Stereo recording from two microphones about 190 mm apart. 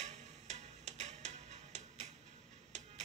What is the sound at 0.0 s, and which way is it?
Music, 35° right (ahead or behind).